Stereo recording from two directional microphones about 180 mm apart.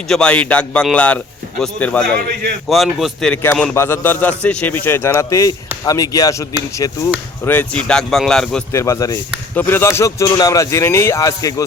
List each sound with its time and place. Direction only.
0.1 s a man's voice: 5° left (ahead or behind)
8.7 s a man's voice: 15° left (ahead or behind)